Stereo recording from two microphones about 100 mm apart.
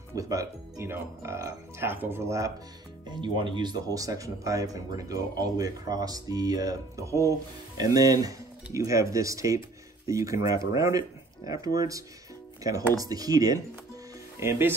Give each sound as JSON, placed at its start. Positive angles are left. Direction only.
{"t": 0.1, "sound": "speech", "side_deg": -35}
{"t": 3.1, "sound": "speech", "side_deg": -50}
{"t": 14.4, "sound": "speech", "side_deg": -25}